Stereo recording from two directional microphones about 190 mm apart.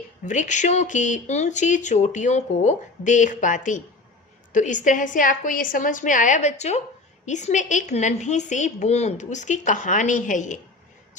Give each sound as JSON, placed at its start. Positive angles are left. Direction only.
{"t": 0.3, "sound": "a woman's voice", "side_deg": 40}